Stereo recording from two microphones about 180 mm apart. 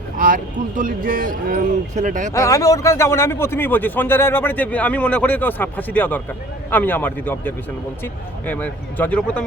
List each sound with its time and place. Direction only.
0.2 s speech: 50° right (ahead or behind)
2.3 s speech: 20° left (ahead or behind)